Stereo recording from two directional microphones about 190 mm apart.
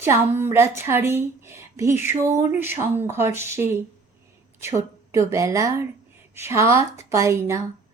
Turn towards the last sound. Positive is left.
turn(degrees=-15)  # may be behind; listen again after turning